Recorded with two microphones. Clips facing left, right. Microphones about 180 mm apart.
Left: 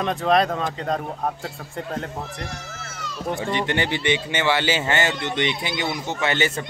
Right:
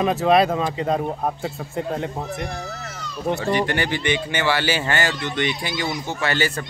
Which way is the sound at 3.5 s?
20° left (ahead or behind).